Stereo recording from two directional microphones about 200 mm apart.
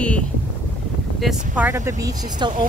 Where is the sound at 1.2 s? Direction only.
5° right (ahead or behind).